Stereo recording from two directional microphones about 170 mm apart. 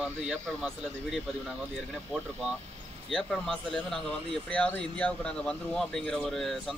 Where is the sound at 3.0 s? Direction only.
5° left (ahead or behind).